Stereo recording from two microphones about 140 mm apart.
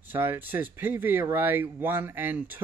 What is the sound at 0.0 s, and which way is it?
Speech, 15° right (ahead or behind).